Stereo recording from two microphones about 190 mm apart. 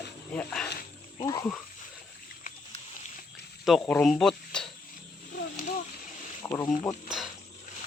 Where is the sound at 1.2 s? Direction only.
20° left (ahead or behind).